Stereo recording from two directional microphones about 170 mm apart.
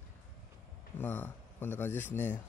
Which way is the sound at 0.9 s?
10° left (ahead or behind).